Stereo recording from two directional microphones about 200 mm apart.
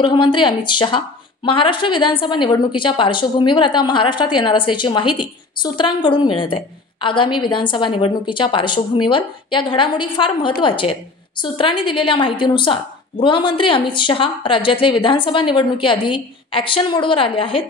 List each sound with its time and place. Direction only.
0.0 s a woman's voice: 25° left (ahead or behind)